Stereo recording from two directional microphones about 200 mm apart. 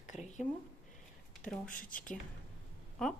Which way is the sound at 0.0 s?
35° left (ahead or behind).